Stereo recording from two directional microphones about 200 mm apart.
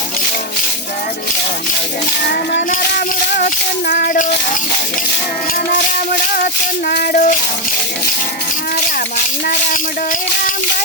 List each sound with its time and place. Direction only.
2.2 s speech: 55° left (ahead or behind)
3.3 s a sound: 45° left (ahead or behind)
5.7 s music: 45° left (ahead or behind)